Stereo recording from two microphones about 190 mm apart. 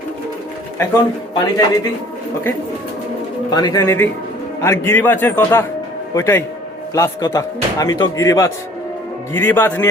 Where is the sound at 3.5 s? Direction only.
20° left (ahead or behind).